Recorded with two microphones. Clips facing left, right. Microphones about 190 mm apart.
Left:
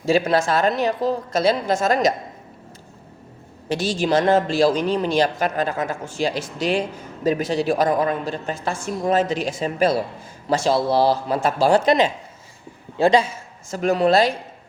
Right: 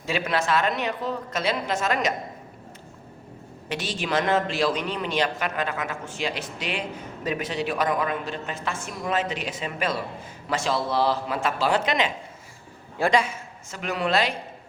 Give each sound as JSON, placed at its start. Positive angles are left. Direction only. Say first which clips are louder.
{"t": 0.0, "sound": "a woman's voice", "louder": "left 8 dB", "side_deg": 40}
{"t": 3.7, "sound": "a woman's voice", "louder": "left 8 dB", "side_deg": 35}
{"t": 13.7, "sound": "a woman's voice", "louder": "left 9 dB", "side_deg": 40}